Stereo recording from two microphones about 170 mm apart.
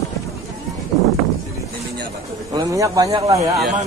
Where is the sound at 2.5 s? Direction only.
20° right (ahead or behind).